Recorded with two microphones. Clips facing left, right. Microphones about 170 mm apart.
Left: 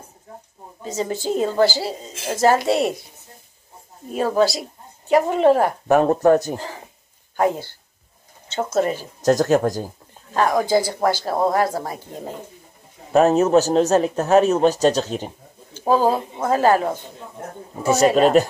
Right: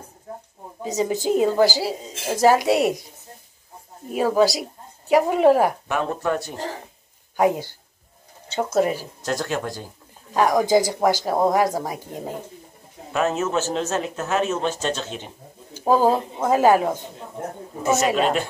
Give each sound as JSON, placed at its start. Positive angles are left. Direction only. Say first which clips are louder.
{"t": 0.8, "sound": "a woman's voice", "louder": "right 2 dB", "side_deg": -15}
{"t": 4.1, "sound": "a woman's voice", "louder": "even", "side_deg": -10}
{"t": 5.9, "sound": "speech", "louder": "left 9 dB", "side_deg": 40}
{"t": 7.3, "sound": "a woman's voice", "louder": "right 1 dB", "side_deg": -15}
{"t": 9.2, "sound": "a man's voice", "louder": "left 11 dB", "side_deg": 40}
{"t": 10.3, "sound": "a woman's voice", "louder": "even", "side_deg": -15}
{"t": 13.1, "sound": "a man's voice", "louder": "left 8 dB", "side_deg": 35}
{"t": 16.4, "sound": "a woman's voice", "louder": "even", "side_deg": -15}
{"t": 17.8, "sound": "a man's voice", "louder": "left 4 dB", "side_deg": 40}